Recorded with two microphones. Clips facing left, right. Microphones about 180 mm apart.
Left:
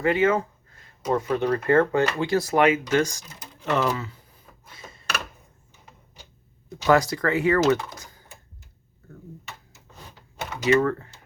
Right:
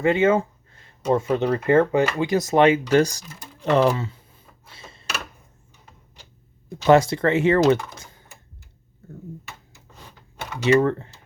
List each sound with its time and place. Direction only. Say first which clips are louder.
0.0 s speech: right 3 dB; 25° right (ahead or behind)
4.6 s a sound: even; 30° right (ahead or behind)
6.7 s speech: right 4 dB; 25° right (ahead or behind)
7.9 s typing: even; 25° right (ahead or behind)
9.0 s a sound: right 5 dB; 25° right (ahead or behind)
10.6 s speech: right 3 dB; 30° right (ahead or behind)